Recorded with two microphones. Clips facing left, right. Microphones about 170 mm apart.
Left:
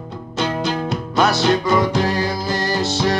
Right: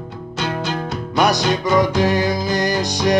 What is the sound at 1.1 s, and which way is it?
Music, 15° right (ahead or behind).